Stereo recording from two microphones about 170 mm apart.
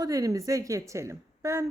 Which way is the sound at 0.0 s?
20° right (ahead or behind).